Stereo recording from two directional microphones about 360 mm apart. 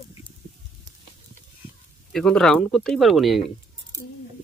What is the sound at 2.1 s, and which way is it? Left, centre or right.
Speech, centre.